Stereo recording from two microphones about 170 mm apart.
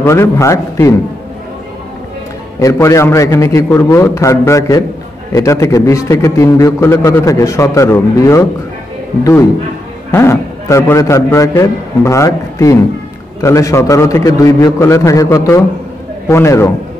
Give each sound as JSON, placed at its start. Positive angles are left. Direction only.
{"t": 0.0, "sound": "a man's voice", "side_deg": 15}
{"t": 2.6, "sound": "a man's voice", "side_deg": 20}